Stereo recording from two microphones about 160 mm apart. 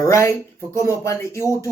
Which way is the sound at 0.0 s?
20° left (ahead or behind).